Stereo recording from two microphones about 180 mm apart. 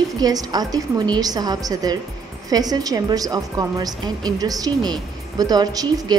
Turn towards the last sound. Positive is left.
turn(degrees=-20)  # may be behind; listen again after turning